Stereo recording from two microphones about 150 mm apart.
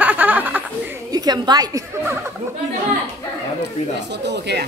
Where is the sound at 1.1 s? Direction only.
25° right (ahead or behind).